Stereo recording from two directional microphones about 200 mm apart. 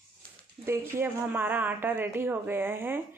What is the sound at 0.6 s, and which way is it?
Speech, 10° right (ahead or behind).